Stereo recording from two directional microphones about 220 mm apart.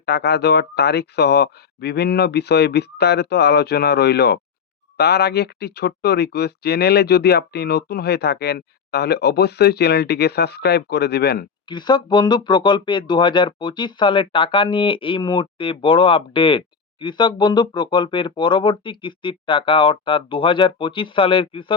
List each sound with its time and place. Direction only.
0.0 s speech: 50° left (ahead or behind)
11.7 s speech: 20° left (ahead or behind)